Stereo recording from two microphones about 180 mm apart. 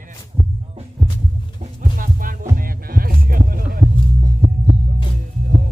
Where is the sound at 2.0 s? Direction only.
50° right (ahead or behind).